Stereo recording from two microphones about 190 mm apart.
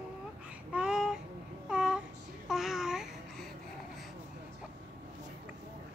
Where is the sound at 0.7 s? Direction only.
5° right (ahead or behind).